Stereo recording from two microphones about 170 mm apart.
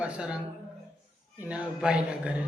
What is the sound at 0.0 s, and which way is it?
Speech, 5° right (ahead or behind).